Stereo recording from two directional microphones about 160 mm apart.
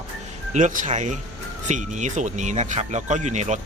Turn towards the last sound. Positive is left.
turn(degrees=-45)  # may be behind; listen again after turning